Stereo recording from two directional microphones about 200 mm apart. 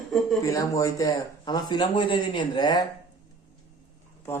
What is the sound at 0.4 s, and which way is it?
Speech, 15° left (ahead or behind).